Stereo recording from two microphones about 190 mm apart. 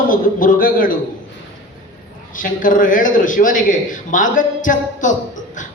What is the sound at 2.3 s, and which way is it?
A man's voice, 45° left (ahead or behind).